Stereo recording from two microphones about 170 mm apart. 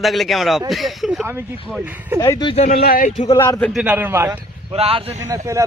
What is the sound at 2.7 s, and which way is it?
Speech, 60° left (ahead or behind).